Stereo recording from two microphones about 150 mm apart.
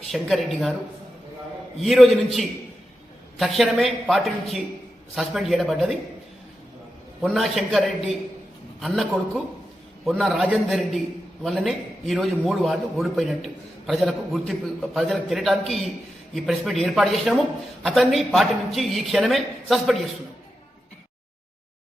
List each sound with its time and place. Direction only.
0.1 s speech: centre (ahead or behind)
1.8 s speech: centre (ahead or behind)
7.3 s speech: centre (ahead or behind)